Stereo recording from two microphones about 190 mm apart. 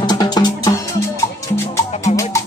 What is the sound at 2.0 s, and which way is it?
Music, 15° left (ahead or behind).